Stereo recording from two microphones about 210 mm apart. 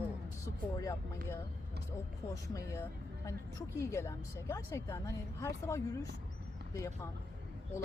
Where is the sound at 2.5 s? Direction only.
15° left (ahead or behind).